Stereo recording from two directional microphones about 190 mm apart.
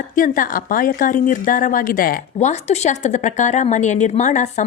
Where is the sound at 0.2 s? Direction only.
45° left (ahead or behind).